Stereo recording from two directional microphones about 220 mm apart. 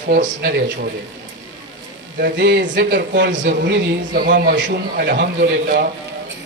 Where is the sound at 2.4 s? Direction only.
50° right (ahead or behind).